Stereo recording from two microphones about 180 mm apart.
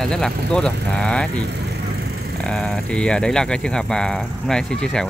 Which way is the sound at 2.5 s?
5° left (ahead or behind).